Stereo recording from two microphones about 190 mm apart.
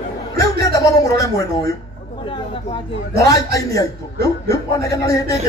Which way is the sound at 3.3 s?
20° left (ahead or behind).